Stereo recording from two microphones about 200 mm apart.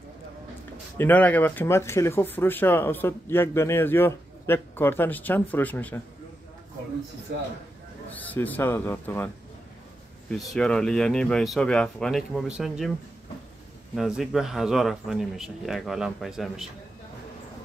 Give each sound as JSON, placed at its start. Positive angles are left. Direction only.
{"t": 0.9, "sound": "speech", "side_deg": 10}
{"t": 8.1, "sound": "speech", "side_deg": 10}
{"t": 10.3, "sound": "speech", "side_deg": 0}
{"t": 13.9, "sound": "speech", "side_deg": 0}